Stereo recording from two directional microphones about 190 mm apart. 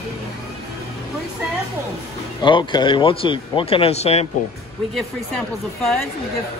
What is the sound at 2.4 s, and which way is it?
Speech, 25° left (ahead or behind).